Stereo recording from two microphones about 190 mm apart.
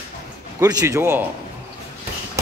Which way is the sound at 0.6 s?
20° right (ahead or behind).